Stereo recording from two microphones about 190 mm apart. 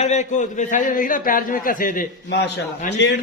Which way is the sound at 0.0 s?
40° left (ahead or behind).